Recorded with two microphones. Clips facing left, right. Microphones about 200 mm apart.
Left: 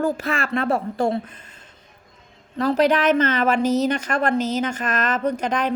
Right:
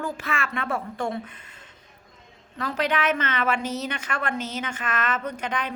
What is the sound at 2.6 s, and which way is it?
Speech, 40° left (ahead or behind).